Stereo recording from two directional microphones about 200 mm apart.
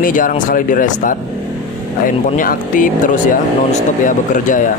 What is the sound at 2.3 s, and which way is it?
Speech, 40° left (ahead or behind).